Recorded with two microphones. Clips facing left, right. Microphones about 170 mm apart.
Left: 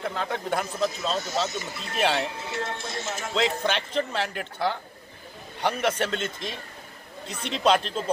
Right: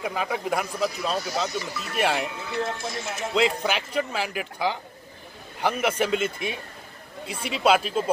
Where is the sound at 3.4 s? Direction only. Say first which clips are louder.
Right 2 dB; 5° right (ahead or behind).